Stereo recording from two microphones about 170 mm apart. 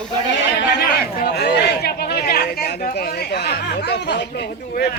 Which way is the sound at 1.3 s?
70° left (ahead or behind).